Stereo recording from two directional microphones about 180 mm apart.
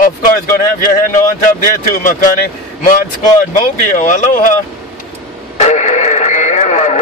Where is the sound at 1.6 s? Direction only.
50° left (ahead or behind).